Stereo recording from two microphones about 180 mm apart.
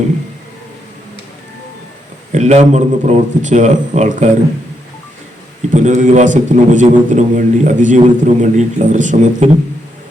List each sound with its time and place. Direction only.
2.3 s a man's voice: 40° right (ahead or behind)
5.7 s a man's voice: 40° right (ahead or behind)